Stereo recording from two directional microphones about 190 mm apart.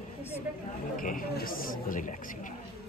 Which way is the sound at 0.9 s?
45° left (ahead or behind).